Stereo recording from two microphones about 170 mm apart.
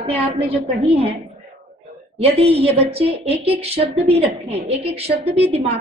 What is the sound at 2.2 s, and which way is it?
Speech, 35° right (ahead or behind).